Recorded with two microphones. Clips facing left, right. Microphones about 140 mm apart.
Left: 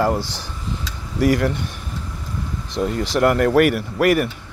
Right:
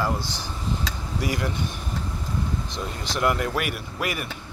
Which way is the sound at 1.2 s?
70° left (ahead or behind).